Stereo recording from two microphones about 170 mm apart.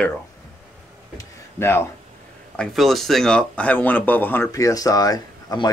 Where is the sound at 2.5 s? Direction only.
Centre (ahead or behind).